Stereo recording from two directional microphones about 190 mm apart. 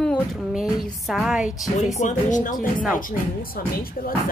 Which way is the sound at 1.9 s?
40° left (ahead or behind).